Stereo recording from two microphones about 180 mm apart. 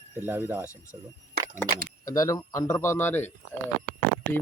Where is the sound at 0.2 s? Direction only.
10° right (ahead or behind).